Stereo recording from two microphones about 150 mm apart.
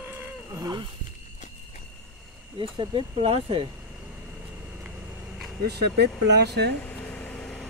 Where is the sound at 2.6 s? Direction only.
35° right (ahead or behind).